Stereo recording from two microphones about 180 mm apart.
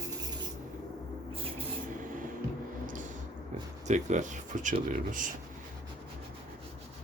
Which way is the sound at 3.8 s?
40° right (ahead or behind).